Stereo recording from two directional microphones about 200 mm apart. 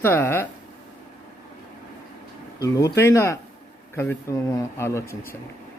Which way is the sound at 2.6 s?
15° left (ahead or behind).